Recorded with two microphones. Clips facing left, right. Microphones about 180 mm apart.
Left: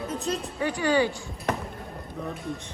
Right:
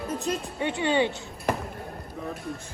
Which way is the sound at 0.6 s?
25° right (ahead or behind).